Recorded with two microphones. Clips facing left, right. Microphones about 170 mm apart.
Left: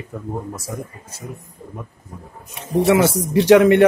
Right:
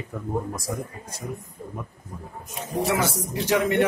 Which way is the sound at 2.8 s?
70° left (ahead or behind).